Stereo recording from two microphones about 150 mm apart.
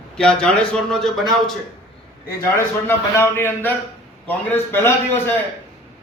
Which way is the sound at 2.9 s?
15° left (ahead or behind).